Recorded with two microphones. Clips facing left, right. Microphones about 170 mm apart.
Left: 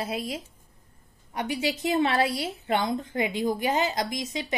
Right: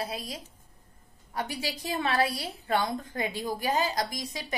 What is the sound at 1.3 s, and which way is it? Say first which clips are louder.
A woman's voice: left 5 dB; 20° left (ahead or behind).